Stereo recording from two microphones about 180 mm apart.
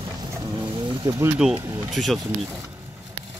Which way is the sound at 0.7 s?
25° right (ahead or behind).